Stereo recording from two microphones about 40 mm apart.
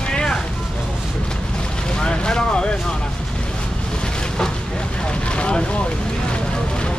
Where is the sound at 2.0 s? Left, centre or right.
Left.